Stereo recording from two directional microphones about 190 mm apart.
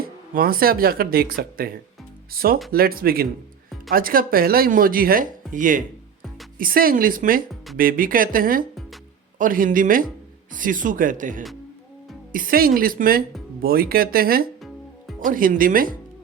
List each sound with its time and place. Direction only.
0.0 s speech: 50° right (ahead or behind)